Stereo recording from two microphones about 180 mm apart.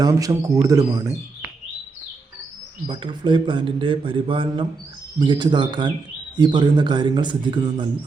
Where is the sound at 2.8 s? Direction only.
25° right (ahead or behind).